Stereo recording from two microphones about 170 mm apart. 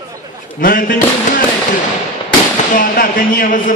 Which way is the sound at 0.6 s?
55° left (ahead or behind).